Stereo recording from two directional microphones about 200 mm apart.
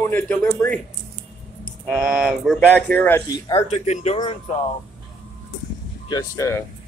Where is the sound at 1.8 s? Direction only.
Centre (ahead or behind).